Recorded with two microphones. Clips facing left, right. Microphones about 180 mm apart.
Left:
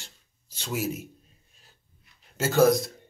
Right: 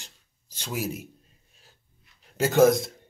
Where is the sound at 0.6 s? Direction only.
10° right (ahead or behind).